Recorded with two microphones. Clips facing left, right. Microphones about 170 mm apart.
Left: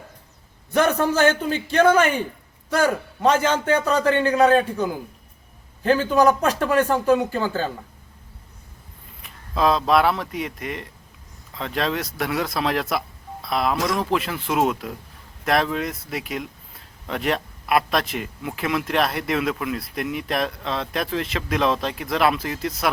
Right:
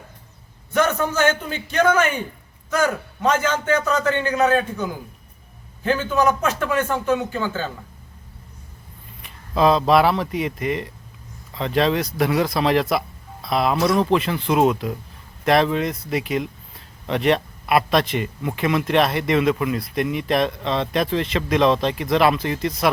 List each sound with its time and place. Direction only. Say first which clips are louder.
0.7 s speech: left 1 dB; 35° left (ahead or behind)
5.8 s speech: left 2 dB; 35° left (ahead or behind)
9.2 s speech: right 3 dB; centre (ahead or behind)